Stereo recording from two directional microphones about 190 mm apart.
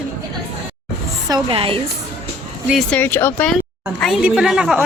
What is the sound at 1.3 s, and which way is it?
Speech, 25° right (ahead or behind).